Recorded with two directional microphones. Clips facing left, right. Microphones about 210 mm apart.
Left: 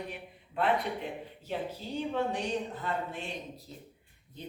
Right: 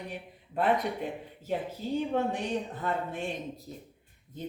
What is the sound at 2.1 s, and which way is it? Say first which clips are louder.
A woman's voice: right 2 dB; 50° right (ahead or behind).